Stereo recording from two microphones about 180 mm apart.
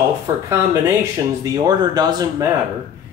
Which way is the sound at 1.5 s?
20° right (ahead or behind).